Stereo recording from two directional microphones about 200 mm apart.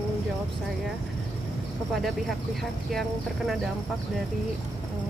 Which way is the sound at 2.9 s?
Centre (ahead or behind).